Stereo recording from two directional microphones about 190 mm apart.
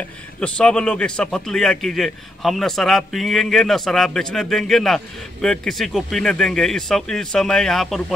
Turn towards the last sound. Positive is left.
turn(degrees=0)  # may be behind; listen again after turning